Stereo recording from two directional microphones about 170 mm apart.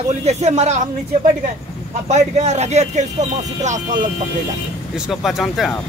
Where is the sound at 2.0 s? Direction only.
40° right (ahead or behind).